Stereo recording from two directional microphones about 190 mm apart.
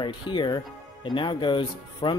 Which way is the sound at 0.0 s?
25° left (ahead or behind).